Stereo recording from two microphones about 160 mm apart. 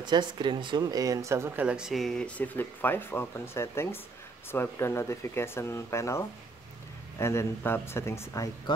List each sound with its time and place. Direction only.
0.0 s speech: 30° right (ahead or behind); by 8.7 s 20° left (ahead or behind)